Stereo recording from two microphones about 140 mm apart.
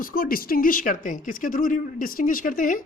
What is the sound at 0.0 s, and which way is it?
A woman's voice, 85° left.